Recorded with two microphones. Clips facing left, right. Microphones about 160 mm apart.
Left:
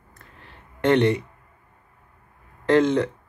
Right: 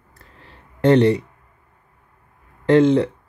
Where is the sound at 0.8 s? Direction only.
35° right (ahead or behind).